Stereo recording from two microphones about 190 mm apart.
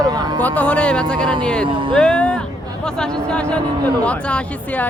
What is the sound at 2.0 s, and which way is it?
Speech, 5° left (ahead or behind).